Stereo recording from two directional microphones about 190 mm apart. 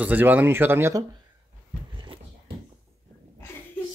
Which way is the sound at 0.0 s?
10° right (ahead or behind).